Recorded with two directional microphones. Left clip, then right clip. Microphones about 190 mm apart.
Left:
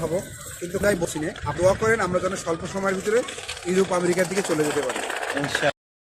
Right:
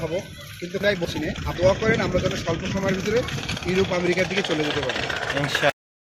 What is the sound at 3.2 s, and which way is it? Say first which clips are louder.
Speech: right 3 dB; 30° right (ahead or behind).